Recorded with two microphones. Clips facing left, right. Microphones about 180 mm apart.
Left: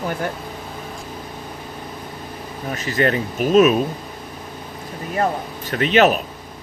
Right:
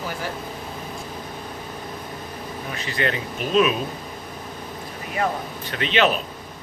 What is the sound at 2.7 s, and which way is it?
Speech, 45° left (ahead or behind).